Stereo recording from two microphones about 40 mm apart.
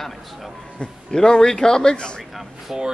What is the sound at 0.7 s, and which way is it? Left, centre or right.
A man's voice, centre.